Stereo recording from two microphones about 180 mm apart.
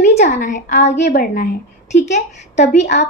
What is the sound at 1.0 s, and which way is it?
Speech, 60° left (ahead or behind).